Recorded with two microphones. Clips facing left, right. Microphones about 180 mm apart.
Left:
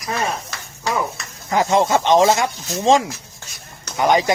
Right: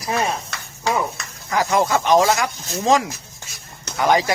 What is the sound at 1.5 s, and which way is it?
Speech, 25° left (ahead or behind).